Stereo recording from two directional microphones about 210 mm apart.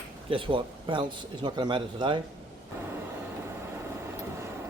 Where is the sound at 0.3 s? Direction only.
25° right (ahead or behind).